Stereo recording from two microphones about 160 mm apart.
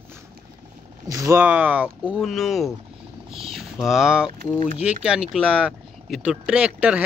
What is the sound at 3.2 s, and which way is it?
Speech, 35° right (ahead or behind).